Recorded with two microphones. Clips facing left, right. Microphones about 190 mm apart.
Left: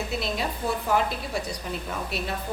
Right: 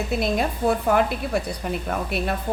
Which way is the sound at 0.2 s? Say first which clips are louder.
Right 6 dB; 55° right (ahead or behind).